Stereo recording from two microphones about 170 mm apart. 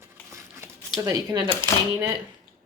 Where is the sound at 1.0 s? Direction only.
20° right (ahead or behind).